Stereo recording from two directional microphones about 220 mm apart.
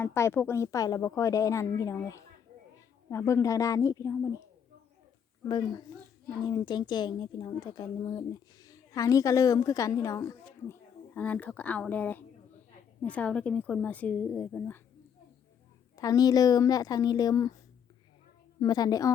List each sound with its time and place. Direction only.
0.0 s a woman's voice: 10° left (ahead or behind)
5.5 s a woman's voice: 20° left (ahead or behind)
16.0 s a woman's voice: 15° left (ahead or behind)
18.6 s a woman's voice: 20° left (ahead or behind)